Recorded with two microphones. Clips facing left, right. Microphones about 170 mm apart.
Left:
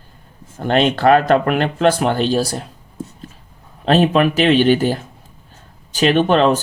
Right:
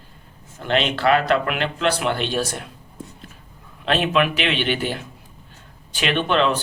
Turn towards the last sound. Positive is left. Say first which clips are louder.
# left 6 dB
turn(degrees=40)  # may be behind; listen again after turning